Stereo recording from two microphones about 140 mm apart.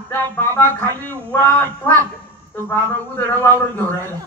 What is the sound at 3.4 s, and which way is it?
Speech, 15° left (ahead or behind).